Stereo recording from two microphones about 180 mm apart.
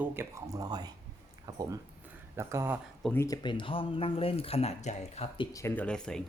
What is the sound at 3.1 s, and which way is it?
Speech, 20° left (ahead or behind).